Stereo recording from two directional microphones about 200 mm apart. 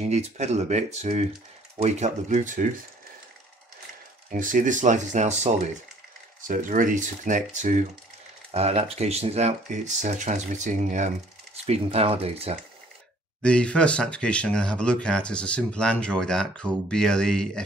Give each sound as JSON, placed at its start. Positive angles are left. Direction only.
{"t": 0.0, "sound": "speech", "side_deg": -35}
{"t": 4.3, "sound": "speech", "side_deg": -40}
{"t": 13.4, "sound": "speech", "side_deg": 5}